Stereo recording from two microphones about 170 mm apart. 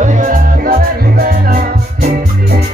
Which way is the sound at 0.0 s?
50° right (ahead or behind).